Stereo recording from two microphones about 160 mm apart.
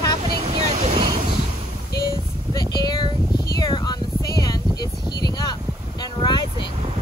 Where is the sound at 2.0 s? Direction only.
25° left (ahead or behind).